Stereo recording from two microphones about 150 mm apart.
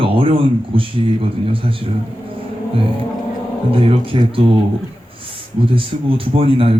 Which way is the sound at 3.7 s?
40° right (ahead or behind).